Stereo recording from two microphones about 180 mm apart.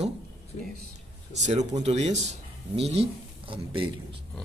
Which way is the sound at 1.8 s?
35° right (ahead or behind).